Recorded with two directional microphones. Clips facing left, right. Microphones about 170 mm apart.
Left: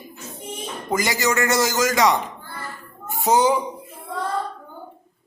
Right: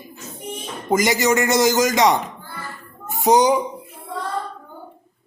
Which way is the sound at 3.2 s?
15° right (ahead or behind).